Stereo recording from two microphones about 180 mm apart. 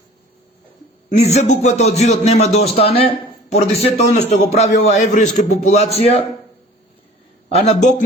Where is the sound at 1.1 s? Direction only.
40° left (ahead or behind).